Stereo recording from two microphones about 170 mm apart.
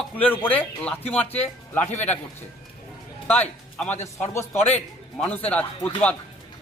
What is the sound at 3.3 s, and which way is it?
A man's voice, 10° left (ahead or behind).